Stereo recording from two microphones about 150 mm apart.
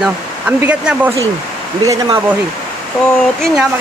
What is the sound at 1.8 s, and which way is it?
Speech, 25° right (ahead or behind).